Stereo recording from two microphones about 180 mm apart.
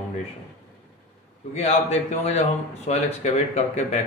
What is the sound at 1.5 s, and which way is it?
Speech, 35° left (ahead or behind).